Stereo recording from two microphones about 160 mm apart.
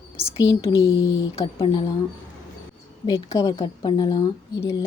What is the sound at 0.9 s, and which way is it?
Speech, 30° left (ahead or behind).